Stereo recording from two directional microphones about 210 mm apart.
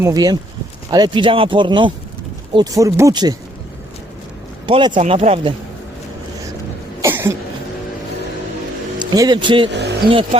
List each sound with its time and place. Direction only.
0.0 s speech: 15° right (ahead or behind)
4.6 s a man's voice: 20° right (ahead or behind)
7.0 s cough: 10° right (ahead or behind)
9.0 s speech: 20° right (ahead or behind)
10.0 s speech: 45° right (ahead or behind)